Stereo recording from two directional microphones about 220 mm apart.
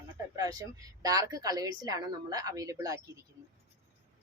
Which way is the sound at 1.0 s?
15° right (ahead or behind).